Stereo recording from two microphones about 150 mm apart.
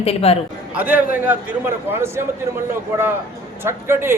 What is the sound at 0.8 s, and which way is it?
A man's voice, 10° right (ahead or behind).